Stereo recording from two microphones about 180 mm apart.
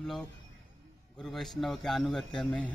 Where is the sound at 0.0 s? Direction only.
Centre (ahead or behind).